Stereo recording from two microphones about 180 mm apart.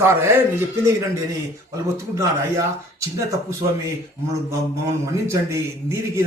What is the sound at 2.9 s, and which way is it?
Speech, 15° right (ahead or behind).